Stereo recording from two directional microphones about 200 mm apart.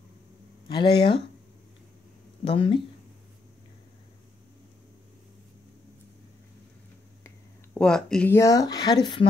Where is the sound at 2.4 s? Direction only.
25° left (ahead or behind).